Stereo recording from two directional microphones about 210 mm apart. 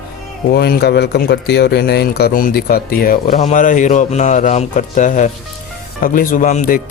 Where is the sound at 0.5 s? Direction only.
50° left (ahead or behind).